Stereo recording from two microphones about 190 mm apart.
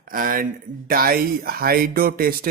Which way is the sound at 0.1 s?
45° right (ahead or behind).